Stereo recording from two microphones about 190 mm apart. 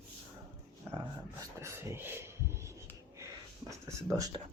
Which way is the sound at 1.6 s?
15° right (ahead or behind).